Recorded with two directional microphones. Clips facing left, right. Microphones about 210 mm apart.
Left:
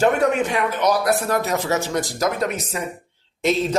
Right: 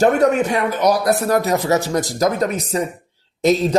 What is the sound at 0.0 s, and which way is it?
Speech, 40° right (ahead or behind).